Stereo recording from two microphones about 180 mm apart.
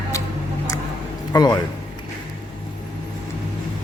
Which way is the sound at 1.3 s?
20° left (ahead or behind).